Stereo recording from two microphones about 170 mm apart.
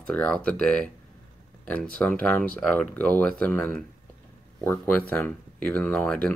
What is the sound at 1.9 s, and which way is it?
Speech, 10° left (ahead or behind).